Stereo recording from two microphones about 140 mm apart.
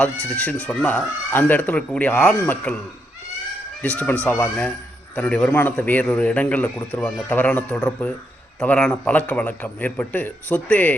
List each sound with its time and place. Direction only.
0.3 s speech: 10° left (ahead or behind)
3.8 s speech: 10° left (ahead or behind)